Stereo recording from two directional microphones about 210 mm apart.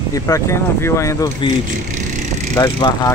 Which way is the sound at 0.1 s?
15° left (ahead or behind).